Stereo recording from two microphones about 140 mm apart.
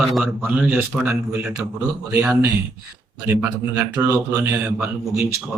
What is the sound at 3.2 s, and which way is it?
A man's voice, 20° right (ahead or behind).